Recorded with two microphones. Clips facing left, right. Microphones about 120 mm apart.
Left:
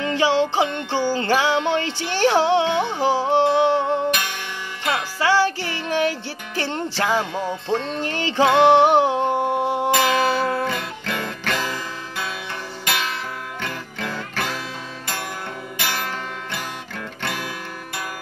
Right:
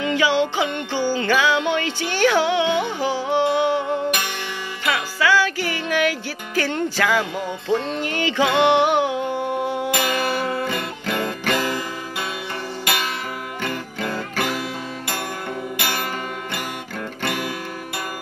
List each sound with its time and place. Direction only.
0.0 s music: 35° left (ahead or behind)
9.9 s music: 5° right (ahead or behind)
15.8 s music: 10° right (ahead or behind)
17.2 s music: 5° right (ahead or behind)